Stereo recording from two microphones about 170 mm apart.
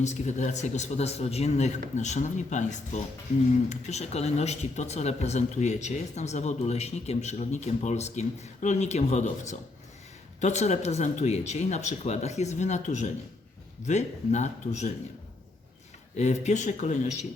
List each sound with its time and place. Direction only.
0.0 s a man's voice: 45° left (ahead or behind)
16.1 s a man's voice: 40° left (ahead or behind)